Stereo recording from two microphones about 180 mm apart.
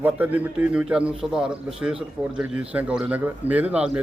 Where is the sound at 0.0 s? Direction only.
10° right (ahead or behind).